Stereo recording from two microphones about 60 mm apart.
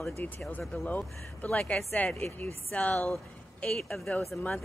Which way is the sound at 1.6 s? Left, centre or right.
Centre.